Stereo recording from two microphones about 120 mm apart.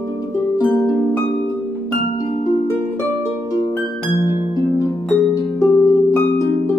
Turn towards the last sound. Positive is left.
turn(degrees=30)  # may be behind; listen again after turning